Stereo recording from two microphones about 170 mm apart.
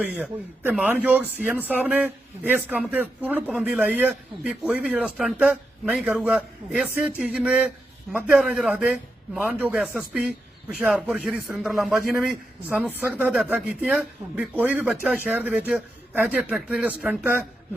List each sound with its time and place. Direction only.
0.0 s a man's voice: 5° right (ahead or behind)